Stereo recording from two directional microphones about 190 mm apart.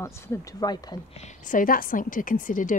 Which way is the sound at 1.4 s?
45° left (ahead or behind).